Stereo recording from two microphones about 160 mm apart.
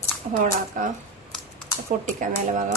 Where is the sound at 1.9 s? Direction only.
55° right (ahead or behind).